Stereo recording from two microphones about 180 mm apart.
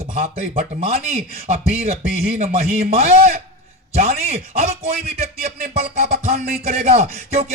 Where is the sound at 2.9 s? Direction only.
35° right (ahead or behind).